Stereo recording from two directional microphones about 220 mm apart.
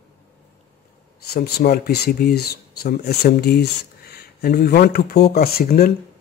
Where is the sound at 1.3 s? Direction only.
45° left (ahead or behind).